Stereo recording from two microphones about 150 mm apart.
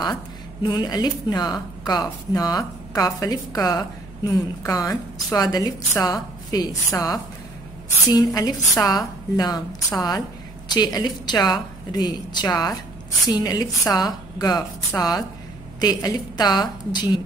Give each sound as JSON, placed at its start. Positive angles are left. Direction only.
{"t": 0.0, "sound": "a woman's voice", "side_deg": 30}